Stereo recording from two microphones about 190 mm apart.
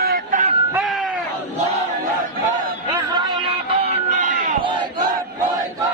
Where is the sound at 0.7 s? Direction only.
5° right (ahead or behind).